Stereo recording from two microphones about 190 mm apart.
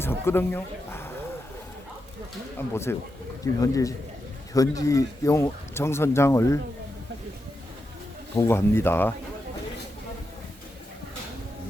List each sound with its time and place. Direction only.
0.0 s speech: 10° left (ahead or behind)
2.6 s speech: 15° left (ahead or behind)
8.4 s speech: 10° left (ahead or behind)